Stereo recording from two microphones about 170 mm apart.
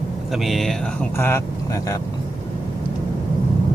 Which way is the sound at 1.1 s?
15° left (ahead or behind).